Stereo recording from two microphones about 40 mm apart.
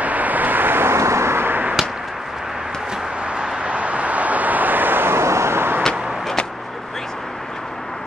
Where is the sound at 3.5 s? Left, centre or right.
Right.